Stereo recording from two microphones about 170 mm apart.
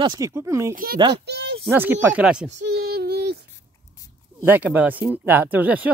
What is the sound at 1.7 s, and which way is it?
Speech, 10° right (ahead or behind).